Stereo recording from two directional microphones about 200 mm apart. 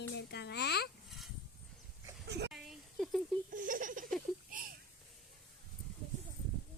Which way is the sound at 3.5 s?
40° right (ahead or behind).